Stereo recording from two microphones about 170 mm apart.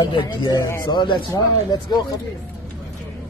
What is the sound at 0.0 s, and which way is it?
Speech, 25° left (ahead or behind).